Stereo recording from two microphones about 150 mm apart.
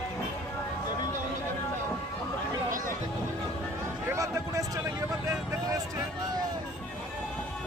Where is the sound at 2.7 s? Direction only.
60° right (ahead or behind).